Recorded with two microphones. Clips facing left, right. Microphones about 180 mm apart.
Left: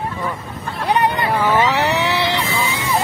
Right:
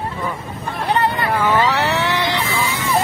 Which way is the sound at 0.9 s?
15° left (ahead or behind).